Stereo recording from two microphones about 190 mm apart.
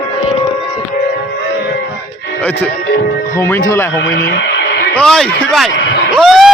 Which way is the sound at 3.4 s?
15° left (ahead or behind).